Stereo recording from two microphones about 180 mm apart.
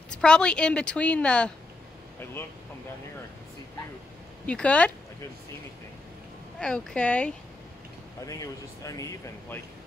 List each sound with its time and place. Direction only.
0.1 s a woman's voice: 5° left (ahead or behind)
4.5 s speech: 5° left (ahead or behind)
6.6 s speech: 5° left (ahead or behind)
8.3 s speech: 20° left (ahead or behind)